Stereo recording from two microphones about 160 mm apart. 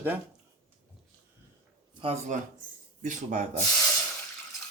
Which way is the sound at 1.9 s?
35° right (ahead or behind).